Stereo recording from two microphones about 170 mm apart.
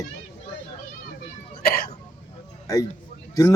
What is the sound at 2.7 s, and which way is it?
Speech, 20° left (ahead or behind).